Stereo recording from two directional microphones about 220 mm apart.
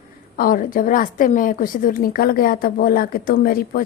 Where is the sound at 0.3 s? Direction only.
40° left (ahead or behind).